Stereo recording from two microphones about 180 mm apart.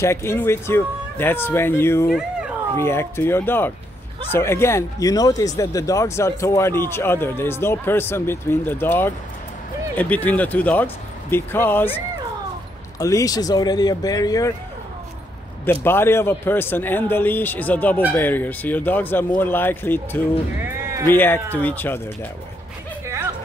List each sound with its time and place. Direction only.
0.0 s speech: 15° left (ahead or behind)
2.0 s speech: centre (ahead or behind)
2.8 s speech: 15° left (ahead or behind)
13.0 s speech: 20° left (ahead or behind)
15.6 s speech: 10° left (ahead or behind)
20.6 s bleat: 15° right (ahead or behind)
21.1 s speech: 10° left (ahead or behind)